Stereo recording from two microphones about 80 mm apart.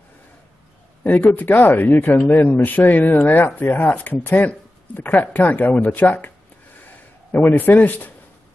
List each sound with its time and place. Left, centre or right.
1.0 s speech: left
7.3 s speech: left